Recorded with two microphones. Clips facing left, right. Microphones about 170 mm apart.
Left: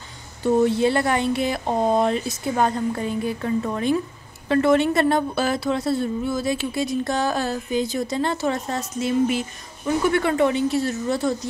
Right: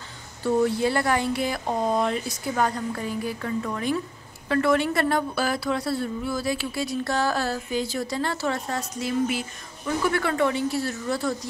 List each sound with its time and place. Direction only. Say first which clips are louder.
0.4 s a woman's voice: left 4 dB; 20° left (ahead or behind)